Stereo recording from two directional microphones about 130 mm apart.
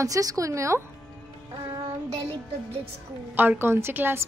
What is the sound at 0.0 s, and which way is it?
Speech, 25° right (ahead or behind).